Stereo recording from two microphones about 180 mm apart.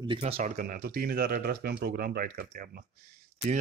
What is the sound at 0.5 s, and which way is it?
A man's voice, 50° right (ahead or behind).